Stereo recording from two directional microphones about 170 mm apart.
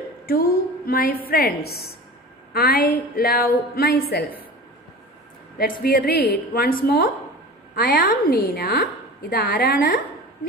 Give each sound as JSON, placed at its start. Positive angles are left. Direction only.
{"t": 0.3, "sound": "a woman's voice", "side_deg": 60}
{"t": 5.6, "sound": "a woman's voice", "side_deg": 60}
{"t": 7.7, "sound": "a woman's voice", "side_deg": 55}